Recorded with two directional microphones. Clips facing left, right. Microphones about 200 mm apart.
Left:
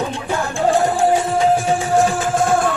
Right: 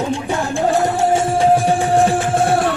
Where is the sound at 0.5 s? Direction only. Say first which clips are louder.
Left 1 dB; 25° right (ahead or behind).